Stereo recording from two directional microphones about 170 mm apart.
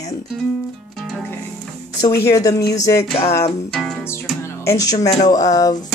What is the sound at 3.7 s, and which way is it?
Music, centre (ahead or behind).